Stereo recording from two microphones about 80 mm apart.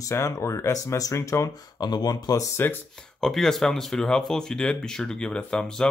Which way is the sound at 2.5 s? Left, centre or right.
Left.